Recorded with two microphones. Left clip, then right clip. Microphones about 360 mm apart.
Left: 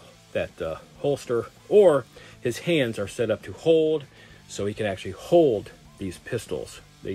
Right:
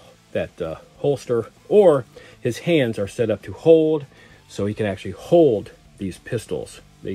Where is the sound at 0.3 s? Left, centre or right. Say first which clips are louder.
Right 3 dB; centre.